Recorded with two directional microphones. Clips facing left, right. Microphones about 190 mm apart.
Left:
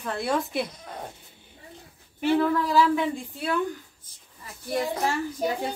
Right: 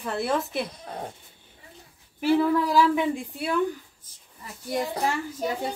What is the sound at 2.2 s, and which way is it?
Speech, 5° right (ahead or behind).